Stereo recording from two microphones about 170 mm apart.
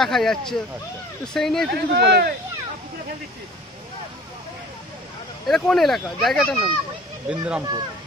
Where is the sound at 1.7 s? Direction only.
70° right (ahead or behind).